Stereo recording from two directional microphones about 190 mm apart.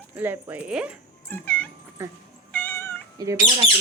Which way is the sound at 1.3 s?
10° left (ahead or behind).